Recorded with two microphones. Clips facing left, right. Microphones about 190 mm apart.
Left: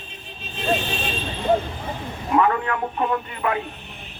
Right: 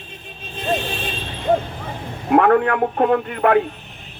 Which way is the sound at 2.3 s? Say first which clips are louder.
Right 6 dB; 60° right (ahead or behind).